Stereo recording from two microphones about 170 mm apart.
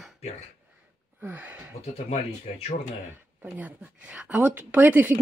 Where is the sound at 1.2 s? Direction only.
10° right (ahead or behind).